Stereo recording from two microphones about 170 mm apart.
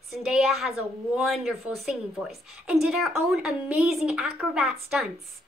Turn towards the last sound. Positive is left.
turn(degrees=0)  # may be behind; listen again after turning